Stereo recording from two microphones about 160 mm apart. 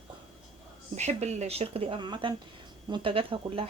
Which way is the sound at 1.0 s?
45° right (ahead or behind).